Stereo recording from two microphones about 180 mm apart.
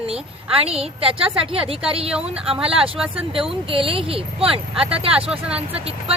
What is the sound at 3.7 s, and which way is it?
Speech, 30° right (ahead or behind).